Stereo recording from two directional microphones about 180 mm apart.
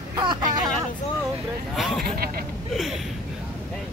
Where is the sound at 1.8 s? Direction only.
Centre (ahead or behind).